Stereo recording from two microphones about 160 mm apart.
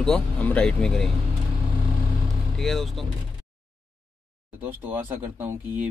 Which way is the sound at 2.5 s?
Centre (ahead or behind).